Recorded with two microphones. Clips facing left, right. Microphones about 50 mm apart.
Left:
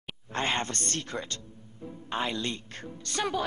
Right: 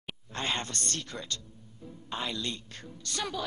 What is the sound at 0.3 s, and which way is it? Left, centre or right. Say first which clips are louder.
A man's voice: left 4 dB; left.